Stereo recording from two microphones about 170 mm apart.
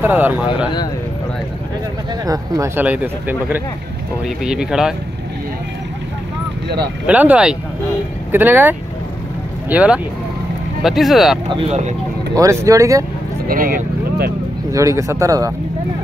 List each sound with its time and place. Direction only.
0.0 s speech: 10° right (ahead or behind)
2.2 s speech: 20° right (ahead or behind); by 4.9 s 5° right (ahead or behind)
7.1 s speech: 10° right (ahead or behind)
11.5 s speech: 40° right (ahead or behind)
12.4 s speech: 20° right (ahead or behind)
13.5 s speech: 55° right (ahead or behind)
14.7 s speech: 20° right (ahead or behind)